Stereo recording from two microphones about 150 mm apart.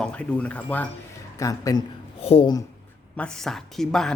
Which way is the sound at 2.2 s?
40° left (ahead or behind).